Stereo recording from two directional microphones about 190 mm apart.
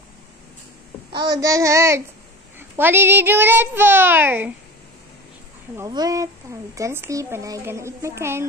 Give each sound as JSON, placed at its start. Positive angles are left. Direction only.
{"t": 1.1, "sound": "a woman's voice", "side_deg": -20}
{"t": 5.8, "sound": "a woman's voice", "side_deg": -20}